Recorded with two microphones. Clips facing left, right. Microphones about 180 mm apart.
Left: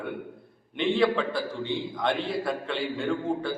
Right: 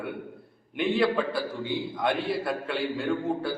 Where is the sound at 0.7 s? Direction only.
5° right (ahead or behind).